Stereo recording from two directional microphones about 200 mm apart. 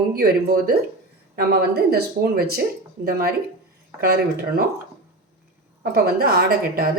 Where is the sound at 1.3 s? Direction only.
50° right (ahead or behind).